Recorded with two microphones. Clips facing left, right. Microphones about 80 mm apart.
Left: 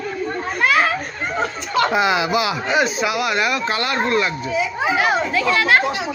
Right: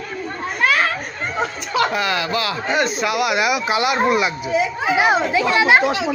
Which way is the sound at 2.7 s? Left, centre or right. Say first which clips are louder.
Right 1 dB; centre.